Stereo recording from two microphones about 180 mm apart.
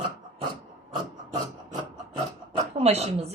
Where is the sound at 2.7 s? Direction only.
35° right (ahead or behind).